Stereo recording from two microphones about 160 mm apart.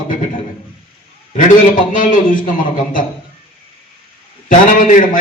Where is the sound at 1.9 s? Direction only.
55° left (ahead or behind).